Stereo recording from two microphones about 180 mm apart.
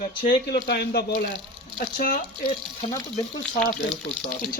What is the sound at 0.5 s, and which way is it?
Speech, 65° left (ahead or behind).